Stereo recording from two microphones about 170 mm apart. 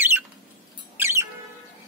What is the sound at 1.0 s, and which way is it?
Bird, 15° right (ahead or behind).